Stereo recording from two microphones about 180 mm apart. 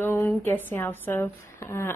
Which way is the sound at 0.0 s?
10° left (ahead or behind).